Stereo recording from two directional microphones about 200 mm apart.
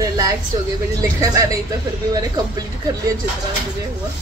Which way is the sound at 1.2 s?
15° right (ahead or behind).